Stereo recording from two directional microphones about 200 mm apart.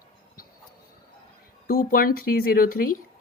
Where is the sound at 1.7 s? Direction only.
45° left (ahead or behind).